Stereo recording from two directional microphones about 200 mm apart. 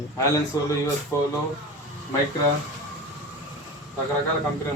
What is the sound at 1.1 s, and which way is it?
Speech, 15° left (ahead or behind).